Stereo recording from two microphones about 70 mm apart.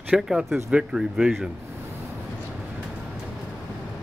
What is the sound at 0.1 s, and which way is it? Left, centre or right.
Speech, centre.